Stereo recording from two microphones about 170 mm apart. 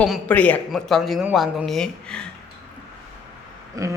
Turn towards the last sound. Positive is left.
turn(degrees=-20)  # may be behind; listen again after turning